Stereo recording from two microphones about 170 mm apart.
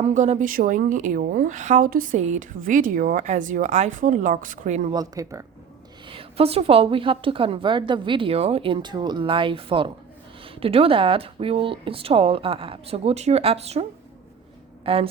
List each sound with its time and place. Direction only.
0.0 s a woman's voice: 45° right (ahead or behind)
4.9 s speech: 20° right (ahead or behind)
6.1 s a woman's voice: 35° right (ahead or behind)
14.9 s a woman's voice: 35° right (ahead or behind)